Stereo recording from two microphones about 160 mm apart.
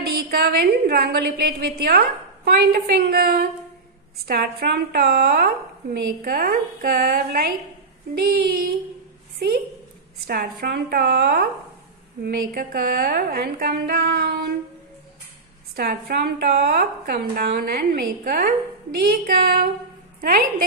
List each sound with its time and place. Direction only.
0.0 s a woman's voice: 75° right (ahead or behind)
10.2 s a woman's voice: 75° right (ahead or behind)
15.7 s a woman's voice: 75° right (ahead or behind)